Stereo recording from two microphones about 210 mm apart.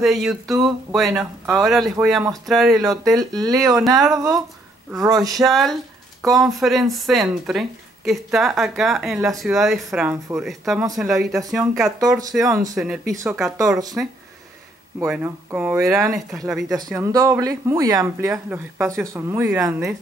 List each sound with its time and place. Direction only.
0.0 s speech: centre (ahead or behind)
2.7 s speech: 15° right (ahead or behind)
5.3 s speech: centre (ahead or behind)
11.3 s speech: 15° right (ahead or behind)
12.7 s speech: 5° right (ahead or behind)
16.4 s speech: centre (ahead or behind)
16.7 s speech: 15° right (ahead or behind)